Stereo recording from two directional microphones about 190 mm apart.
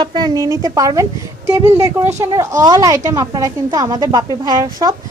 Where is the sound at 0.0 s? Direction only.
20° right (ahead or behind).